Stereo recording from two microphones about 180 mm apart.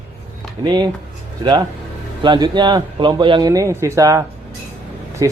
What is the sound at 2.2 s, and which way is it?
A man's voice, 25° right (ahead or behind).